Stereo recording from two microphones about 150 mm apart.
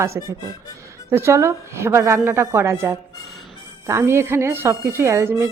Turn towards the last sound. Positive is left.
turn(degrees=-15)  # may be behind; listen again after turning